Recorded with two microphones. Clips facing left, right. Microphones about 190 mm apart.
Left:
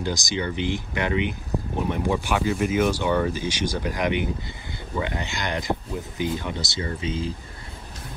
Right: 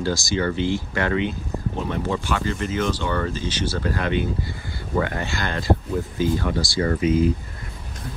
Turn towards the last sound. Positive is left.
turn(degrees=30)  # may be behind; listen again after turning